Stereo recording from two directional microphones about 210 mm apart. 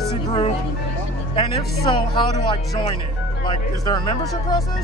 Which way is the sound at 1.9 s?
20° left (ahead or behind).